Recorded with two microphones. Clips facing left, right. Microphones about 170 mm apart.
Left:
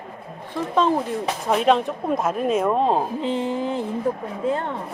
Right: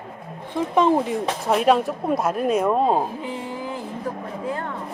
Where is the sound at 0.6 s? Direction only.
15° right (ahead or behind).